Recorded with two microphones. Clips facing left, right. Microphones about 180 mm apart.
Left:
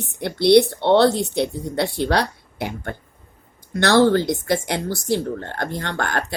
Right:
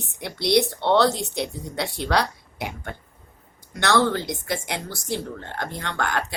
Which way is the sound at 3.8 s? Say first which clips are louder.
Left 6 dB; 35° left (ahead or behind).